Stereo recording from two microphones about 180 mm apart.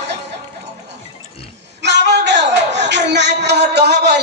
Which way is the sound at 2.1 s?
75° right (ahead or behind).